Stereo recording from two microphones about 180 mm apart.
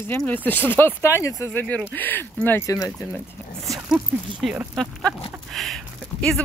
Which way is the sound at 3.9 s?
5° right (ahead or behind).